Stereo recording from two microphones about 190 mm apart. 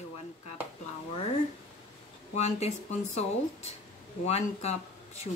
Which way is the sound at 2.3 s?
35° left (ahead or behind).